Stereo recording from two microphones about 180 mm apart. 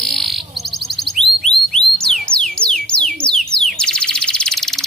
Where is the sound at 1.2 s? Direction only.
30° right (ahead or behind).